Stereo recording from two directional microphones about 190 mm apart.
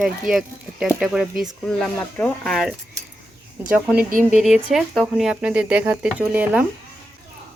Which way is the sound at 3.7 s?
5° right (ahead or behind).